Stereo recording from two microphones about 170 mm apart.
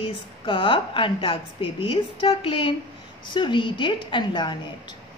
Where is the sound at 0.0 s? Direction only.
30° left (ahead or behind).